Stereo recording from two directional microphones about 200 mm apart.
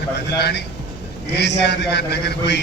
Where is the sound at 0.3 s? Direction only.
55° left (ahead or behind).